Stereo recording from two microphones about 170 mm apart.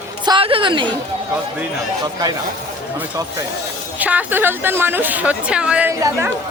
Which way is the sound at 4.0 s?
10° right (ahead or behind).